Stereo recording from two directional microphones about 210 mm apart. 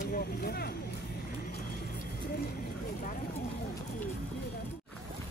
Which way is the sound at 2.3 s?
45° left (ahead or behind).